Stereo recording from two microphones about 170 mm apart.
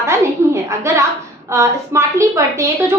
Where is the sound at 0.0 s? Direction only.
15° right (ahead or behind).